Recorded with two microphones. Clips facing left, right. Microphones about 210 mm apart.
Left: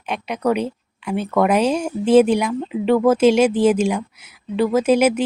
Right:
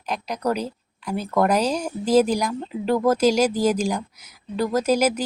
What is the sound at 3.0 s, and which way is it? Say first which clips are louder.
Speech: left 4 dB; 5° left (ahead or behind).